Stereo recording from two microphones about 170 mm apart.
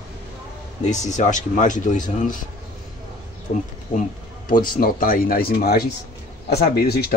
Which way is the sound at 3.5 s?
50° left (ahead or behind).